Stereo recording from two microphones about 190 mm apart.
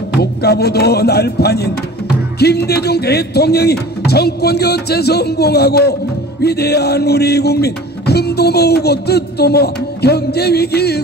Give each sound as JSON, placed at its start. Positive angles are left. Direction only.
{"t": 0.2, "sound": "music", "side_deg": 60}